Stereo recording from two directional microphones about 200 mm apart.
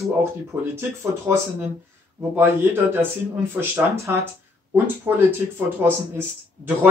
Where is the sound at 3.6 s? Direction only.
15° right (ahead or behind).